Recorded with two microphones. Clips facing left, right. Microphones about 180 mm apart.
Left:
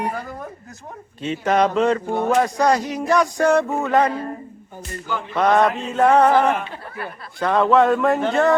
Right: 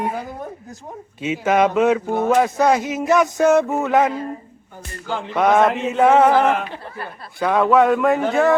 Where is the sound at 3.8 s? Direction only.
Centre (ahead or behind).